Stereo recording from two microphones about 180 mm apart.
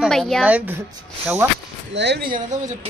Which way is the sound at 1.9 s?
70° right (ahead or behind).